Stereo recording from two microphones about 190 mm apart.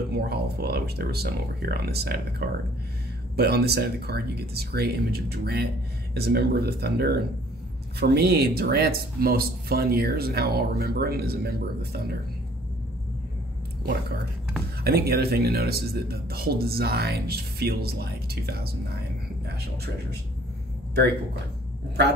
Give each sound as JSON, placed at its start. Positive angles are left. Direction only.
{"t": 0.1, "sound": "speech", "side_deg": -55}
{"t": 14.8, "sound": "speech", "side_deg": -55}